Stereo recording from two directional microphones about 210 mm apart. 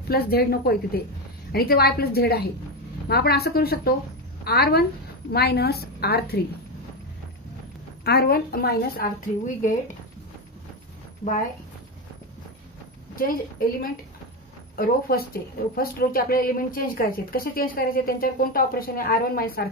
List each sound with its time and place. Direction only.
0.1 s a woman's voice: 45° left (ahead or behind)
8.0 s a woman's voice: 50° left (ahead or behind)
13.1 s a woman's voice: 45° left (ahead or behind)